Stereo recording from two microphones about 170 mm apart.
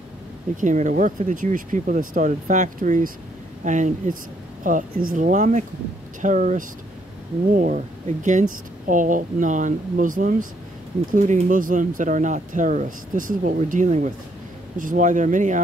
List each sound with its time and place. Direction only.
0.6 s speech: 45° right (ahead or behind)